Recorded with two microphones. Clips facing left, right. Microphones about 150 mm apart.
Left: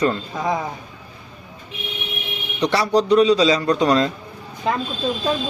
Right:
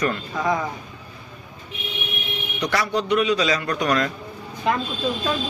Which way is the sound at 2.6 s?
30° left (ahead or behind).